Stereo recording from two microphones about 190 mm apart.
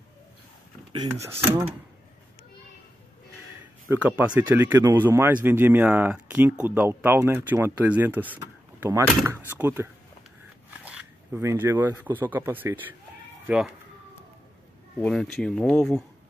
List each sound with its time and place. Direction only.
3.9 s speech: 10° right (ahead or behind)
10.8 s zipper: 5° right (ahead or behind)
12.2 s speech: 10° right (ahead or behind)
15.0 s speech: 5° left (ahead or behind)